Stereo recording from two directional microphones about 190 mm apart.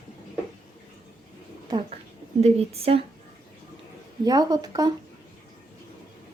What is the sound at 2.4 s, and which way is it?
Speech, 35° right (ahead or behind).